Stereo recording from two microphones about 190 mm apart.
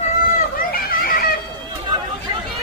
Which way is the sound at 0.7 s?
50° left (ahead or behind).